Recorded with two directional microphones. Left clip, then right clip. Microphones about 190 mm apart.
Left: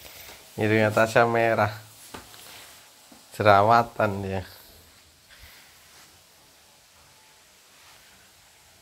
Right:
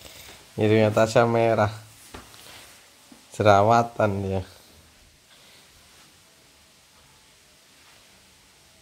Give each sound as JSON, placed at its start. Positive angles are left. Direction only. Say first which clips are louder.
{"t": 0.6, "sound": "speech", "louder": "right 2 dB", "side_deg": -15}
{"t": 3.3, "sound": "speech", "louder": "even", "side_deg": -15}